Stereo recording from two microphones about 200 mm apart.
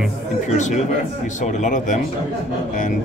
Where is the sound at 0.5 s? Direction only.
35° left (ahead or behind).